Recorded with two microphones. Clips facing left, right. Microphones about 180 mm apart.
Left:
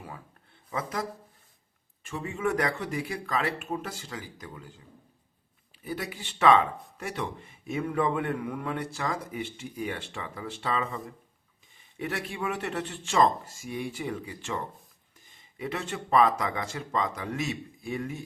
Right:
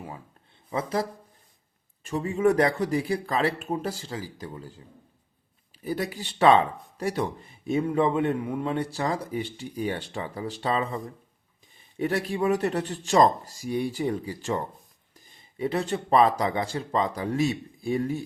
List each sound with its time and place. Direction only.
0.7 s speech: 30° right (ahead or behind)
2.0 s speech: 35° right (ahead or behind)
5.8 s speech: 35° right (ahead or behind)